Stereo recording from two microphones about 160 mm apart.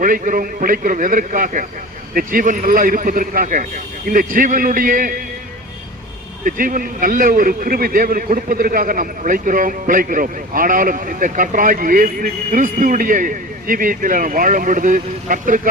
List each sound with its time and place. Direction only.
0.0 s a man's voice: 60° right (ahead or behind)
6.4 s a man's voice: 60° right (ahead or behind)